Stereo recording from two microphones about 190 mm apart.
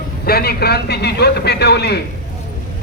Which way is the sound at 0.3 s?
55° left (ahead or behind).